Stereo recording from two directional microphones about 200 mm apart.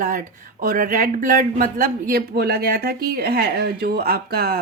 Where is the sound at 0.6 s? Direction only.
45° right (ahead or behind).